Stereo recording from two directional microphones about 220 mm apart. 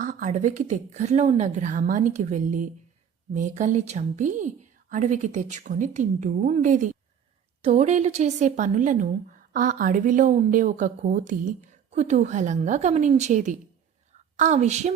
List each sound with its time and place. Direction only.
0.0 s a woman's voice: 35° right (ahead or behind)